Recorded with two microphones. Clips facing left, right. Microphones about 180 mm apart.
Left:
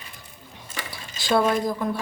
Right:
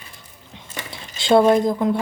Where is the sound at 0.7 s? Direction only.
25° right (ahead or behind).